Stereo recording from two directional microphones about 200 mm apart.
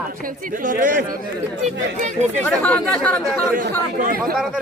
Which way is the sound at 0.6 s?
45° right (ahead or behind).